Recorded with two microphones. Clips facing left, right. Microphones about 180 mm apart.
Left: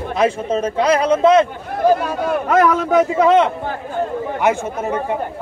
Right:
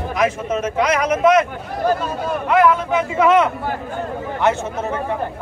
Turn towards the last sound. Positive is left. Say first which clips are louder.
# left 1 dB
turn(degrees=15)  # may be behind; listen again after turning